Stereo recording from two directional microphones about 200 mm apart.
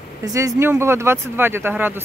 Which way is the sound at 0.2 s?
15° right (ahead or behind).